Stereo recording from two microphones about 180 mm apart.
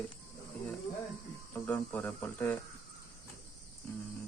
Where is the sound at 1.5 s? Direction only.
10° left (ahead or behind).